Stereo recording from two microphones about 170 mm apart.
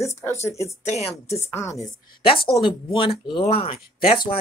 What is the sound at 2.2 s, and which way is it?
Speech, 30° left (ahead or behind).